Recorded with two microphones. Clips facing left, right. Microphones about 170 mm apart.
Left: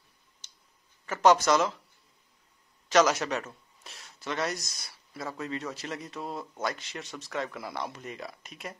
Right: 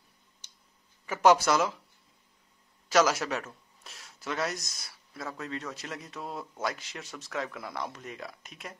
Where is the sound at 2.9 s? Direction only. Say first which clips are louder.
Left 1 dB; 5° right (ahead or behind).